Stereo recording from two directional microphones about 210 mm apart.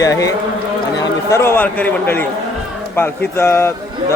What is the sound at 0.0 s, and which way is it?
A man's voice, 15° left (ahead or behind).